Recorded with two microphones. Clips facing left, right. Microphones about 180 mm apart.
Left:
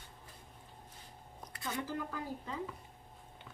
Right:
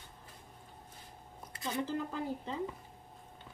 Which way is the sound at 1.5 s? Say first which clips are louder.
Right 3 dB; 25° right (ahead or behind).